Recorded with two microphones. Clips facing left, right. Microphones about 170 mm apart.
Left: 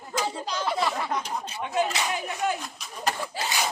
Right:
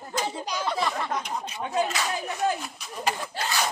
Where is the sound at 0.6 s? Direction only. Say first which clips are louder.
Left 1 dB; 5° left (ahead or behind).